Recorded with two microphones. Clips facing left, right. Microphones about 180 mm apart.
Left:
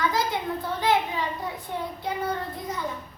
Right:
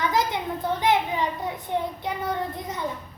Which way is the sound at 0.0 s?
20° right (ahead or behind).